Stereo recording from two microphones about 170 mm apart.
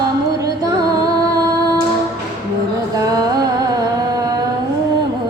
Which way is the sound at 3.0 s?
20° right (ahead or behind).